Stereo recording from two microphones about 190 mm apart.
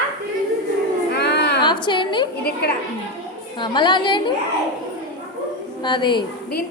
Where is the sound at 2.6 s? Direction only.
60° left (ahead or behind).